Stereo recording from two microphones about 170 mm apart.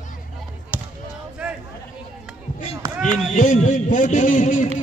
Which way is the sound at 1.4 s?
5° right (ahead or behind).